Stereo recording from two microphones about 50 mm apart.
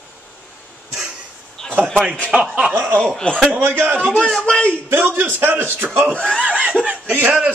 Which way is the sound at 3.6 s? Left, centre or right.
Right.